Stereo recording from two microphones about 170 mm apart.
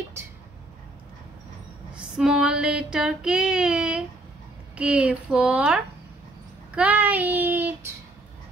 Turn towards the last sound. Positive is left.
turn(degrees=-10)  # may be behind; listen again after turning